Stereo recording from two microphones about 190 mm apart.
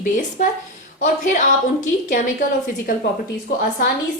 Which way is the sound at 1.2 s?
40° left (ahead or behind).